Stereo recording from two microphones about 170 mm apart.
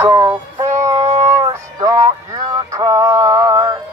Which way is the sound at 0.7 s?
15° right (ahead or behind).